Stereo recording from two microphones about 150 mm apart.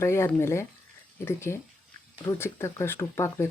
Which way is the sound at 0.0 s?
15° left (ahead or behind).